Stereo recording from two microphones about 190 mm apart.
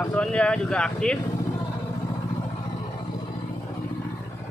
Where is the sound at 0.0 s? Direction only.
5° left (ahead or behind).